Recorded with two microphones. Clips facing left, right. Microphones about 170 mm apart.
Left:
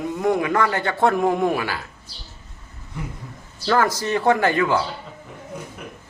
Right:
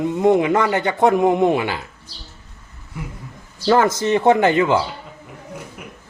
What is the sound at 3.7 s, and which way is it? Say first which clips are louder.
Speech: right 4 dB; 20° right (ahead or behind).